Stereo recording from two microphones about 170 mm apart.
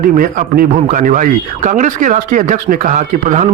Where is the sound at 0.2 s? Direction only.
55° right (ahead or behind).